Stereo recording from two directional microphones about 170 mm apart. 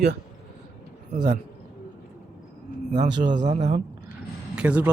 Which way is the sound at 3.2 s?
45° right (ahead or behind).